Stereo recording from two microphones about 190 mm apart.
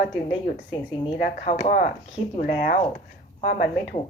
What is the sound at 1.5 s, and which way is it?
Speech, 50° left (ahead or behind).